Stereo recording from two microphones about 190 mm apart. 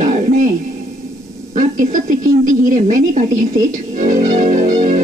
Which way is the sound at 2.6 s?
40° right (ahead or behind).